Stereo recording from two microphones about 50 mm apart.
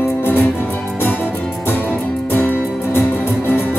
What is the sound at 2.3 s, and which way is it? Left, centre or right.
Music, left.